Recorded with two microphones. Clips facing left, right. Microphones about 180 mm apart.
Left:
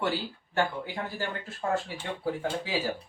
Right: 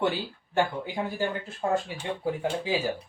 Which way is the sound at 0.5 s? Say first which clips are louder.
Right 3 dB; 15° right (ahead or behind).